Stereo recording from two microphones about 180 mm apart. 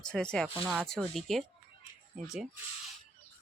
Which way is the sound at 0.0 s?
5° left (ahead or behind).